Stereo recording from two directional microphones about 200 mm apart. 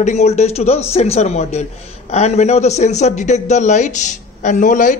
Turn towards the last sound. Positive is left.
turn(degrees=40)  # may be behind; listen again after turning